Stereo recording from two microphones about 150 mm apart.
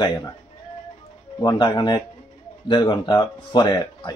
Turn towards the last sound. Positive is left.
turn(degrees=25)  # may be behind; listen again after turning